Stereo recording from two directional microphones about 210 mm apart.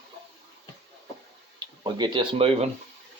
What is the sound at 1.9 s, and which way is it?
Speech, 20° right (ahead or behind).